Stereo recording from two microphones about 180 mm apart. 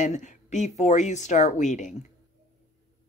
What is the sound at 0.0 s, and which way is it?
Speech, 40° left (ahead or behind).